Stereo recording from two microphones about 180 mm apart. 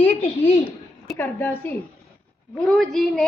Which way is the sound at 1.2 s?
10° left (ahead or behind).